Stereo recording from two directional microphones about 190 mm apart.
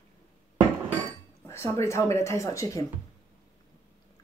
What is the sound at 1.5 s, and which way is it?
Speech, 15° left (ahead or behind).